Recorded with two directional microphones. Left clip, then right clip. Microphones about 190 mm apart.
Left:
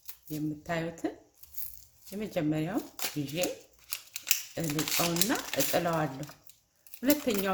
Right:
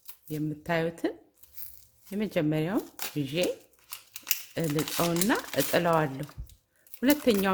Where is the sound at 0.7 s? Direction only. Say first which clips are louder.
Right 7 dB; 45° right (ahead or behind).